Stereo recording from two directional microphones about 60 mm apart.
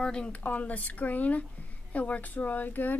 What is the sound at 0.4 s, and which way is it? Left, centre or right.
A woman's voice, left.